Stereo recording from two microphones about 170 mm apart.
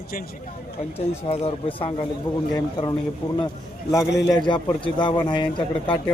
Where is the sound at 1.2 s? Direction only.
35° left (ahead or behind).